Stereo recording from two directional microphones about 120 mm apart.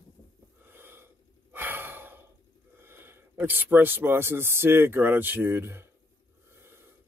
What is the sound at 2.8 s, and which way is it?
Speech, 20° right (ahead or behind).